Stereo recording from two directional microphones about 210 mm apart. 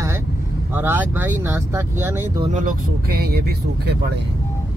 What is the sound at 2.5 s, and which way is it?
Speech, 40° right (ahead or behind).